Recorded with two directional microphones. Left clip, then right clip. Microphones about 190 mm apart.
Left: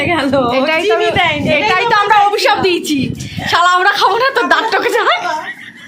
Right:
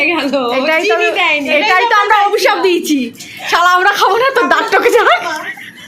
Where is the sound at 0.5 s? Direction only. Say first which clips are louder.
Even; centre (ahead or behind).